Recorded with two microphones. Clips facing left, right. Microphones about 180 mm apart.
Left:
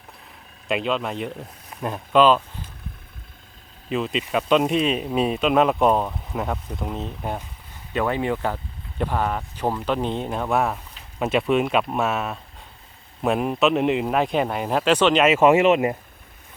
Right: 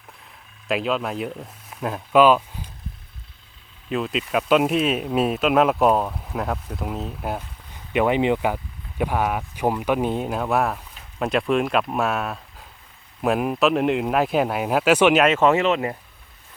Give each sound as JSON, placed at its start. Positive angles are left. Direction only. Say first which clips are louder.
{"t": 0.7, "sound": "speech", "louder": "even", "side_deg": -5}
{"t": 3.8, "sound": "speech", "louder": "even", "side_deg": 0}
{"t": 7.9, "sound": "speech", "louder": "right 4 dB", "side_deg": -15}
{"t": 15.2, "sound": "speech", "louder": "left 2 dB", "side_deg": 10}